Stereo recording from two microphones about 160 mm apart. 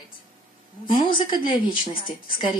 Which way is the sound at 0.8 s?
30° left (ahead or behind).